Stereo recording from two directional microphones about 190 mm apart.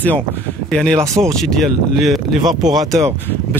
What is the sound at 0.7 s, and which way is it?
Speech, 5° left (ahead or behind).